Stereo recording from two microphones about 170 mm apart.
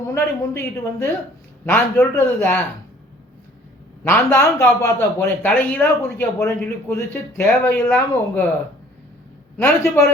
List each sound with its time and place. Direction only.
0.1 s speech: 15° left (ahead or behind)
4.0 s speech: 15° left (ahead or behind)
9.6 s speech: 10° left (ahead or behind)